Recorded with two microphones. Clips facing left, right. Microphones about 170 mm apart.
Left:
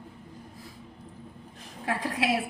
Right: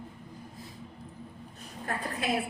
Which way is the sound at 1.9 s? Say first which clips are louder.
Left 5 dB; 90° left.